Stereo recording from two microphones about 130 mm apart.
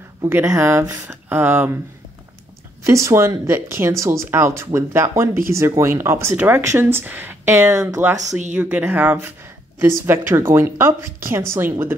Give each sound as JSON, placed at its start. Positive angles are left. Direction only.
{"t": 0.3, "sound": "speech", "side_deg": -15}
{"t": 2.8, "sound": "speech", "side_deg": -20}